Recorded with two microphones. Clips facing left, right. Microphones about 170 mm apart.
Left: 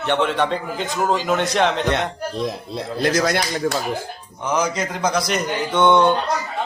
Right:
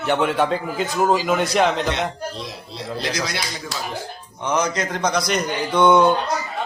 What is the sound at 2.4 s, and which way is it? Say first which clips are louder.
Speech: left 7 dB; 50° left (ahead or behind).